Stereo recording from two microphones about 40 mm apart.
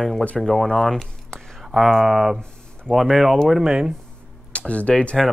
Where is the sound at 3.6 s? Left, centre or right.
Centre.